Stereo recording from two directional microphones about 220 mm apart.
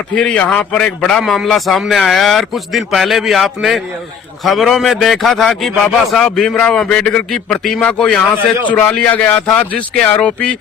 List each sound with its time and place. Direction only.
0.1 s a man's voice: 5° left (ahead or behind)